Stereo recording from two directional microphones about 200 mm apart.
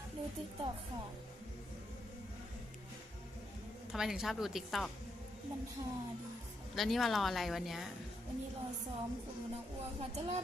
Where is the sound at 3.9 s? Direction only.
Centre (ahead or behind).